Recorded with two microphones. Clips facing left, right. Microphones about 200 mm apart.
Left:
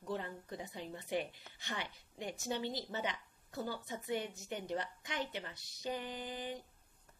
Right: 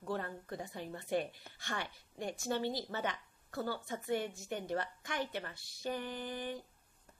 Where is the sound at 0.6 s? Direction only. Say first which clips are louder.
Right 1 dB; 20° left (ahead or behind).